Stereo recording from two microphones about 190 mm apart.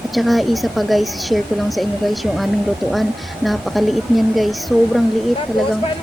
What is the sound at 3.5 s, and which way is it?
A woman's voice, centre (ahead or behind).